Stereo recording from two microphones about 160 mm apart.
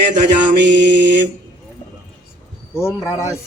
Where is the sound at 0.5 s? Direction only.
90° right.